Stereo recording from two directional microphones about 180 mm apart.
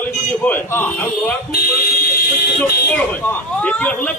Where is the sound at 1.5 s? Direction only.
55° left (ahead or behind).